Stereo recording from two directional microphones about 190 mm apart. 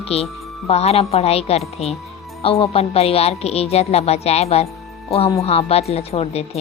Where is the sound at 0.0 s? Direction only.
30° left (ahead or behind).